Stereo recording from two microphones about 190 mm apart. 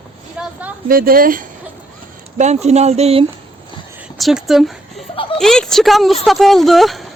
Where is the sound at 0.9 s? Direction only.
50° right (ahead or behind).